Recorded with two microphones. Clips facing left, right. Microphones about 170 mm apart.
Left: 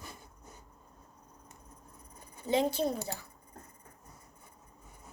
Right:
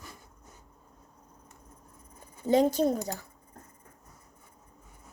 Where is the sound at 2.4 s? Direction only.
45° right (ahead or behind).